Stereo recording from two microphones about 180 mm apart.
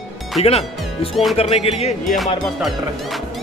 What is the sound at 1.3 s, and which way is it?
Speech, 35° left (ahead or behind).